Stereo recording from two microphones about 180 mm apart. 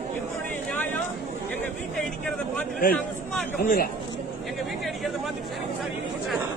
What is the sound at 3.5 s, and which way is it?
Speech, 50° left (ahead or behind).